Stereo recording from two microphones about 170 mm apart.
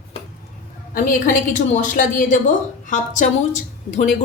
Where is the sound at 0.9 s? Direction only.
55° left (ahead or behind).